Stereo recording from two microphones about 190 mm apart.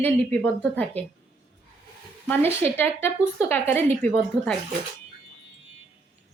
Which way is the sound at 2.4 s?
10° left (ahead or behind).